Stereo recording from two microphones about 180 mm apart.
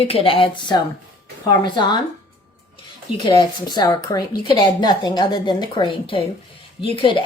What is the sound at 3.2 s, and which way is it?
A woman's voice, 25° left (ahead or behind).